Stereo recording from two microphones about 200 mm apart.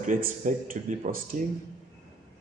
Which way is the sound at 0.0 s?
40° right (ahead or behind).